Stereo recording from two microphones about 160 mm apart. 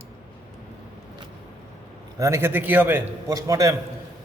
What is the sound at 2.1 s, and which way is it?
A man's voice, 20° right (ahead or behind).